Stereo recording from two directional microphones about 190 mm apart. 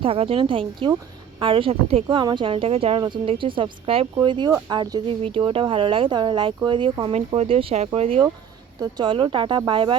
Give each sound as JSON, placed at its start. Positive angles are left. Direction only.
{"t": 0.0, "sound": "speech", "side_deg": -30}